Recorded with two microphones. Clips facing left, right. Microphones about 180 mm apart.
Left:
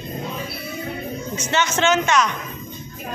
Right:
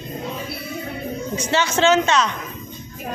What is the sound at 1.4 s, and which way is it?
Speech, 35° right (ahead or behind).